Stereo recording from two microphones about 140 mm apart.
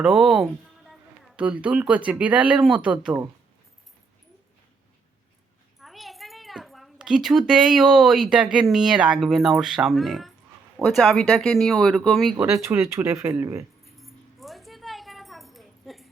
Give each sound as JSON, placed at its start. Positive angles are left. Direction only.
{"t": 0.0, "sound": "speech", "side_deg": -5}
{"t": 5.8, "sound": "speech", "side_deg": 0}
{"t": 12.4, "sound": "speech", "side_deg": -20}
{"t": 13.9, "sound": "a sound", "side_deg": 0}